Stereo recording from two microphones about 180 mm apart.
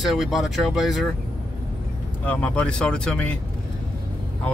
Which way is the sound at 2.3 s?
10° left (ahead or behind).